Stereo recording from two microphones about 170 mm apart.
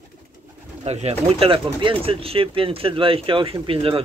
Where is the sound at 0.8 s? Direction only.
35° right (ahead or behind).